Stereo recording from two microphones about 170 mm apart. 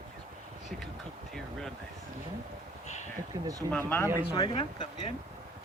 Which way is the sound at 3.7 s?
10° left (ahead or behind).